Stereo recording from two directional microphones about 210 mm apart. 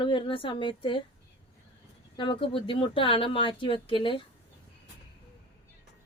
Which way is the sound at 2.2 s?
25° left (ahead or behind).